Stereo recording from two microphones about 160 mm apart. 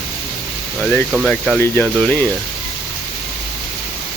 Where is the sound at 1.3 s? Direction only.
5° left (ahead or behind).